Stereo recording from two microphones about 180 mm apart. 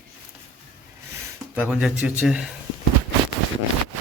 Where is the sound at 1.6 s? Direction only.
5° right (ahead or behind).